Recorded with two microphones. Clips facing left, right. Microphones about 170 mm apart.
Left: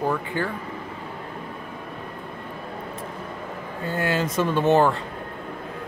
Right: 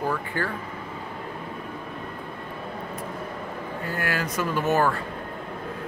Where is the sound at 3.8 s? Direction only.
25° left (ahead or behind).